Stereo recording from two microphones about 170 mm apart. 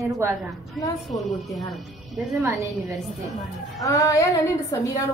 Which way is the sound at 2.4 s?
20° right (ahead or behind).